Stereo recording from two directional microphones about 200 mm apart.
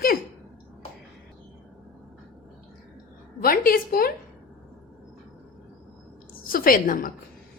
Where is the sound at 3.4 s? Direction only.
45° left (ahead or behind).